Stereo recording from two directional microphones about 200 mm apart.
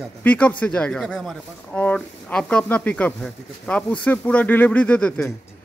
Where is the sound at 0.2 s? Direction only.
5° left (ahead or behind).